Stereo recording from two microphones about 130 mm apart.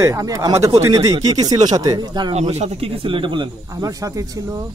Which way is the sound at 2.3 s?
55° right (ahead or behind).